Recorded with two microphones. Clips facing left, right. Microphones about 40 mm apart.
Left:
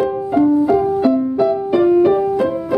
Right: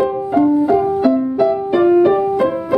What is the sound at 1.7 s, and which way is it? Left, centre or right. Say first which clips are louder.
Music: right 1 dB; right.